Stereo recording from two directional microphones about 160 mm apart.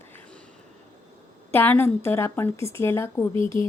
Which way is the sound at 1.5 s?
15° left (ahead or behind).